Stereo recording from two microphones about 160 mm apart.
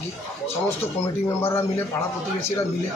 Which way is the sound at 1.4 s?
15° left (ahead or behind).